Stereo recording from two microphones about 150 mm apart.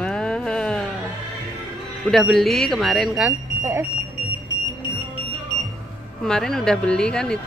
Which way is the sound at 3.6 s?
15° right (ahead or behind).